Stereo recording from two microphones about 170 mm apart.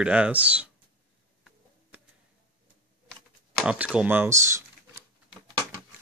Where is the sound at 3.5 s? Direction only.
5° right (ahead or behind).